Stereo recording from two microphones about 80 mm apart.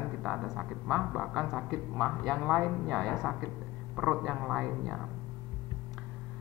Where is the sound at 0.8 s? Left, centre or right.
Centre.